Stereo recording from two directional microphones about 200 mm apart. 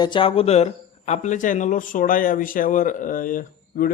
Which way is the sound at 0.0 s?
25° left (ahead or behind).